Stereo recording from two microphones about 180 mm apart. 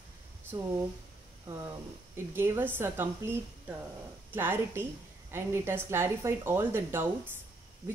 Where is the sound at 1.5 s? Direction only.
15° right (ahead or behind).